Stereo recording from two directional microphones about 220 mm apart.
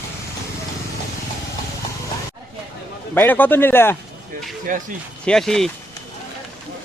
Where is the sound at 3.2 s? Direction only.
10° left (ahead or behind).